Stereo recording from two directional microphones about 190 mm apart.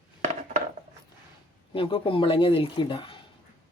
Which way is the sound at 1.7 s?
25° left (ahead or behind).